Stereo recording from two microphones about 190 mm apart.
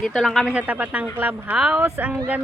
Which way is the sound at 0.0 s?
Centre (ahead or behind).